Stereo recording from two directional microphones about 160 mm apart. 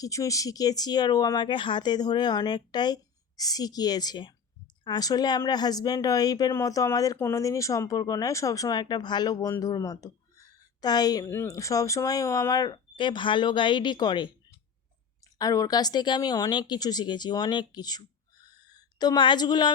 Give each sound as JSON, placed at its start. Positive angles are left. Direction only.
{"t": 0.0, "sound": "speech", "side_deg": 20}
{"t": 15.4, "sound": "speech", "side_deg": 25}
{"t": 18.4, "sound": "a sound", "side_deg": 25}